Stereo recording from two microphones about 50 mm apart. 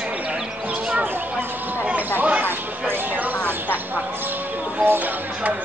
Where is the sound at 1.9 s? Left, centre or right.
Right.